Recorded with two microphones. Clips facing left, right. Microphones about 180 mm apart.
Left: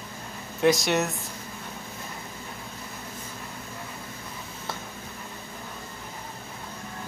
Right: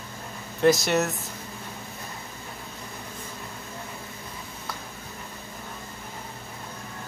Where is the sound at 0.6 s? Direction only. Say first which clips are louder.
Right 1 dB; centre (ahead or behind).